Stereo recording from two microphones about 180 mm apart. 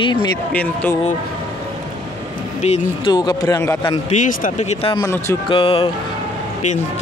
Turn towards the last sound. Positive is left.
turn(degrees=30)  # may be behind; listen again after turning